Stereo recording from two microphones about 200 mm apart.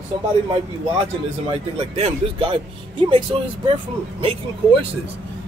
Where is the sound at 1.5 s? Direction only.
30° right (ahead or behind).